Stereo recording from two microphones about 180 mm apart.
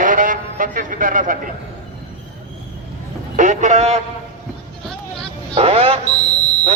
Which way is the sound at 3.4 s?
45° right (ahead or behind).